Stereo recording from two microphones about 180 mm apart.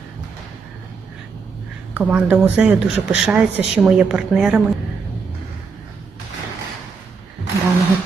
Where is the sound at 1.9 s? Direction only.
10° right (ahead or behind).